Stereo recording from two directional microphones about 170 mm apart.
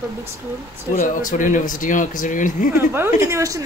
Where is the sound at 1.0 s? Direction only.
50° left (ahead or behind).